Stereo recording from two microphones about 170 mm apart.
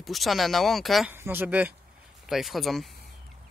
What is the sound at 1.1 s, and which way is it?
Speech, 10° right (ahead or behind).